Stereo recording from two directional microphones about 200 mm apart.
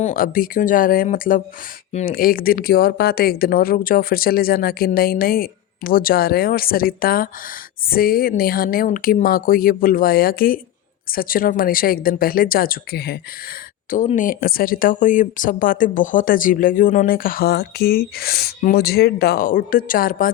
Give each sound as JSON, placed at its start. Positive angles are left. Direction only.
{"t": 0.0, "sound": "speech", "side_deg": 45}
{"t": 13.9, "sound": "speech", "side_deg": 40}